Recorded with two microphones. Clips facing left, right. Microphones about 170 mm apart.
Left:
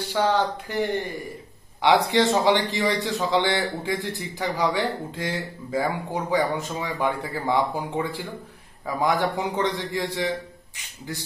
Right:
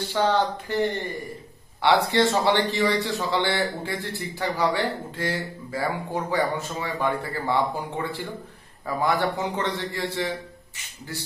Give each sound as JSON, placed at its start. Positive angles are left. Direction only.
{"t": 0.1, "sound": "a man's voice", "side_deg": 15}